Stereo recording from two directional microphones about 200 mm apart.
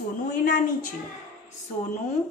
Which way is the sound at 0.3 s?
45° left (ahead or behind).